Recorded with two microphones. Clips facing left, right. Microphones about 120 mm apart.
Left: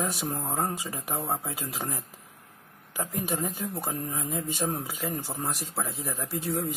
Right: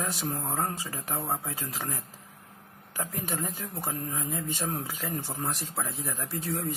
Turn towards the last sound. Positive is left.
turn(degrees=10)  # may be behind; listen again after turning